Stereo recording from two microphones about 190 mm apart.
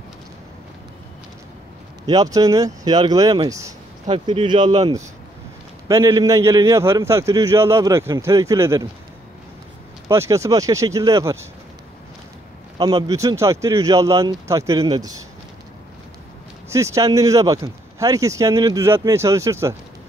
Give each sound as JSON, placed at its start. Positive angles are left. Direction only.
{"t": 2.0, "sound": "speech", "side_deg": -20}
{"t": 4.3, "sound": "speech", "side_deg": -25}
{"t": 10.0, "sound": "speech", "side_deg": -15}
{"t": 12.7, "sound": "speech", "side_deg": -20}
{"t": 16.6, "sound": "speech", "side_deg": -15}